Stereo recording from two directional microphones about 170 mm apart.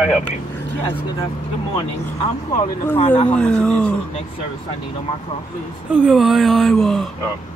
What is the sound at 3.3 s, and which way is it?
Speech, 5° left (ahead or behind).